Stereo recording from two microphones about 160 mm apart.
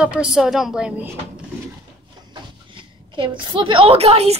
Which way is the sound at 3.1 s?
30° right (ahead or behind).